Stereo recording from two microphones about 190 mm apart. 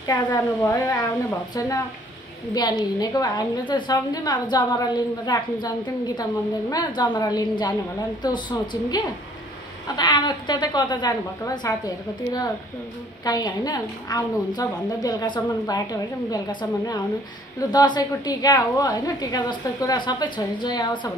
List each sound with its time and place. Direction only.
0.0 s a woman's voice: 20° left (ahead or behind)
2.5 s a woman's voice: 20° left (ahead or behind)
17.6 s a woman's voice: 20° left (ahead or behind)